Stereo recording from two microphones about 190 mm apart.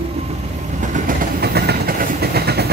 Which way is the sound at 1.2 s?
55° right (ahead or behind).